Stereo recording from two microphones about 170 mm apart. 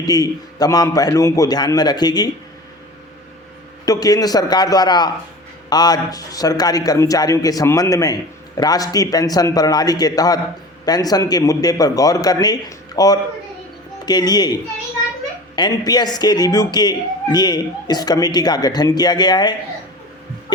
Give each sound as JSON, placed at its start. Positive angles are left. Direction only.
{"t": 0.0, "sound": "a man's voice", "side_deg": 20}
{"t": 3.8, "sound": "a man's voice", "side_deg": 20}